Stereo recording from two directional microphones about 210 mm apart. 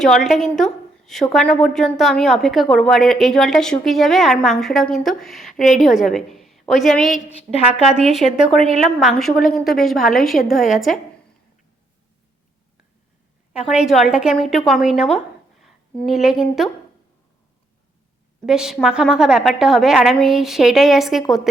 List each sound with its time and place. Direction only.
0.0 s a woman's voice: centre (ahead or behind)
7.5 s a woman's voice: 30° left (ahead or behind)
7.9 s a woman's voice: centre (ahead or behind)
13.5 s a woman's voice: 5° right (ahead or behind)
18.4 s a woman's voice: 5° right (ahead or behind)